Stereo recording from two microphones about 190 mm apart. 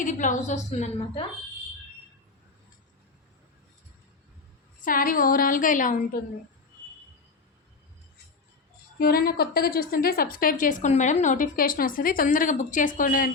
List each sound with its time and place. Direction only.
0.0 s a woman's voice: 40° left (ahead or behind)
4.9 s a woman's voice: 45° left (ahead or behind)
9.0 s a woman's voice: 50° left (ahead or behind)